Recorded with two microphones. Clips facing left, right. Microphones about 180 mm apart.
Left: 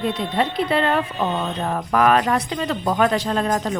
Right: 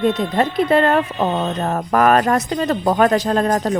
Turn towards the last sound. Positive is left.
turn(degrees=-45)  # may be behind; listen again after turning